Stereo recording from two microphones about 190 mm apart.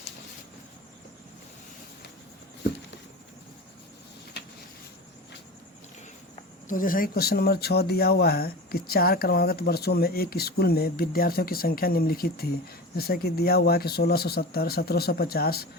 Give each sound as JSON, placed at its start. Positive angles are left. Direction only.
{"t": 6.7, "sound": "speech", "side_deg": 45}